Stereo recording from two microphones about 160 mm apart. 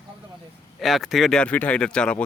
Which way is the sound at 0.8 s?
Centre (ahead or behind).